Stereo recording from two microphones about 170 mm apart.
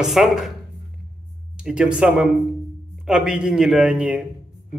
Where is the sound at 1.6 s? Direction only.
5° right (ahead or behind).